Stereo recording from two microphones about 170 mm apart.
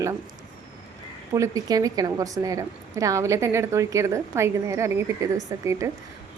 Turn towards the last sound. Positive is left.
turn(degrees=-15)  # may be behind; listen again after turning